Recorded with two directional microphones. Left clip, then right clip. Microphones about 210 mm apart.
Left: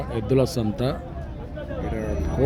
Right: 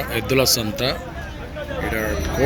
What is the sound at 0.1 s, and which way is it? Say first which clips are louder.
Speech: right 4 dB; 20° left (ahead or behind).